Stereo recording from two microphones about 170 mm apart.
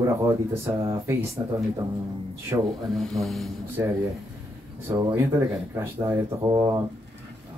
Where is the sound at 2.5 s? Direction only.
15° right (ahead or behind).